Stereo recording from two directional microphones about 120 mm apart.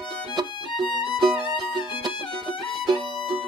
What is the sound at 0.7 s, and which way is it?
Music, centre (ahead or behind).